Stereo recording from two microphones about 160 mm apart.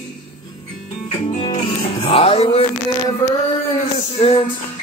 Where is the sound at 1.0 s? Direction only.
40° left (ahead or behind).